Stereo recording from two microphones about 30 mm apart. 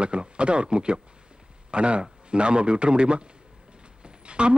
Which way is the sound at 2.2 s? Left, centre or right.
Right.